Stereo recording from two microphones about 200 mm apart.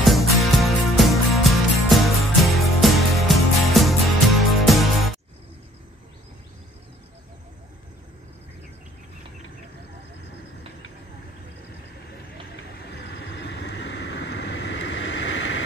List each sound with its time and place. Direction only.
0.0 s music: centre (ahead or behind)
12.9 s vehicle: 55° left (ahead or behind)